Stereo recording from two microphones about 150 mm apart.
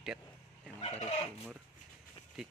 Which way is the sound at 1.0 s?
40° left (ahead or behind).